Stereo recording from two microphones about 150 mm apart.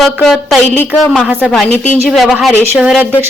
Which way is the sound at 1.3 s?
10° right (ahead or behind).